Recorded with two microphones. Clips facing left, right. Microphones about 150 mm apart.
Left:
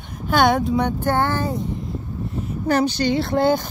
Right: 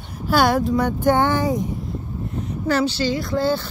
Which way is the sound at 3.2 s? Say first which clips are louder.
Left 3 dB; 55° left (ahead or behind).